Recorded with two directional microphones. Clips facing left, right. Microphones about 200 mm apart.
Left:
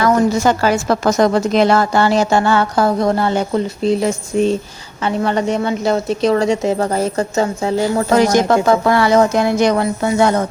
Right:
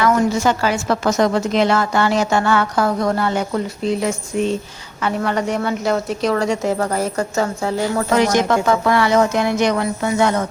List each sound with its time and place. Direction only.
0.0 s a woman's voice: 40° left (ahead or behind); by 8.0 s 20° left (ahead or behind)
8.1 s a woman's voice: 35° left (ahead or behind)